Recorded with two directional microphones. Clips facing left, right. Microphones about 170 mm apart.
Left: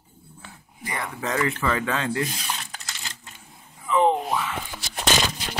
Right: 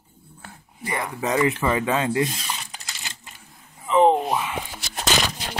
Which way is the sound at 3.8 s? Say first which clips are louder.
Right 3 dB; 20° right (ahead or behind).